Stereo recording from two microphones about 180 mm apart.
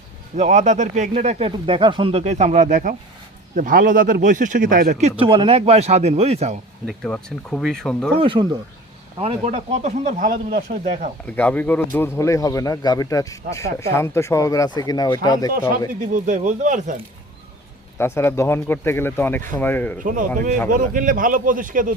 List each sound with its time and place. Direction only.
0.3 s speech: 40° right (ahead or behind)
6.8 s speech: 5° left (ahead or behind)
8.2 s speech: 30° right (ahead or behind)
11.3 s a man's voice: 10° left (ahead or behind)
16.0 s a man's voice: 45° right (ahead or behind)
17.9 s a man's voice: 15° left (ahead or behind)
20.1 s a man's voice: 50° right (ahead or behind)